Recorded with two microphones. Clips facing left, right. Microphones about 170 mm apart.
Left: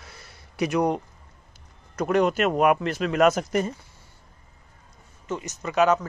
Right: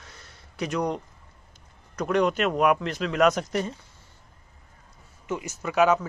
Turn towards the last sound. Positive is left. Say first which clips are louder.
# even
turn(degrees=-10)  # may be behind; listen again after turning